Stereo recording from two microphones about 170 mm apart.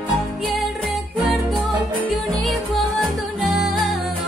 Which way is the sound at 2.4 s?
Centre (ahead or behind).